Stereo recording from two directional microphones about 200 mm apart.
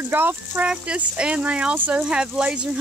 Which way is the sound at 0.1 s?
10° right (ahead or behind).